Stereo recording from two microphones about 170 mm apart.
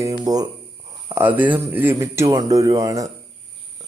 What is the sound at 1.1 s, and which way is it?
Speech, 10° right (ahead or behind).